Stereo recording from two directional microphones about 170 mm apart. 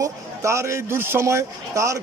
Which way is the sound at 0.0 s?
15° right (ahead or behind).